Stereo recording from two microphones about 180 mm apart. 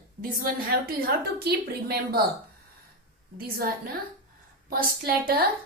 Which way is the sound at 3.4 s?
55° right (ahead or behind).